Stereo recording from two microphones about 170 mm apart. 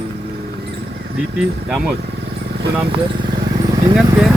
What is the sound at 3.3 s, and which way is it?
Vehicle, 25° right (ahead or behind).